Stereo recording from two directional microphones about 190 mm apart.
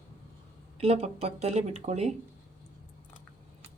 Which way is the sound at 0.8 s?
35° right (ahead or behind).